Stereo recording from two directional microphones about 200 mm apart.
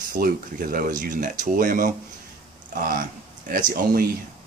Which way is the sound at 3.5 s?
45° right (ahead or behind).